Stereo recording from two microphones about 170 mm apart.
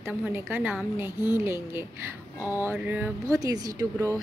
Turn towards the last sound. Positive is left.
turn(degrees=-20)  # may be behind; listen again after turning